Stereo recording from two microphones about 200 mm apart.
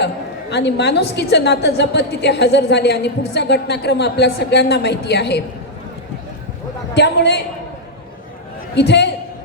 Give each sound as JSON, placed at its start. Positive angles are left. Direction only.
{"t": 0.5, "sound": "a woman's voice", "side_deg": 55}
{"t": 6.9, "sound": "a woman's voice", "side_deg": 60}
{"t": 8.7, "sound": "a man's voice", "side_deg": 60}